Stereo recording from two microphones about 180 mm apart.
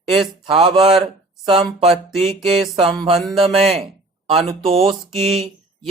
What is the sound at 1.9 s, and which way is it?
Music, centre (ahead or behind).